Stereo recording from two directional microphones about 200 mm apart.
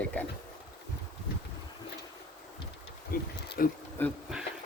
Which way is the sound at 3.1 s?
45° left (ahead or behind).